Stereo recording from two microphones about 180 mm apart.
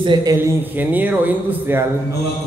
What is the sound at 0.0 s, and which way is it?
A man's voice, 25° right (ahead or behind).